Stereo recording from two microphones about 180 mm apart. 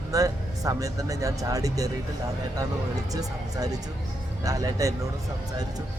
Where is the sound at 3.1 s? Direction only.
20° right (ahead or behind).